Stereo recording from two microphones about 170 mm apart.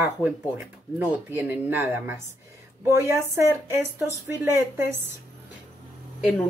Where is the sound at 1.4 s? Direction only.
10° right (ahead or behind).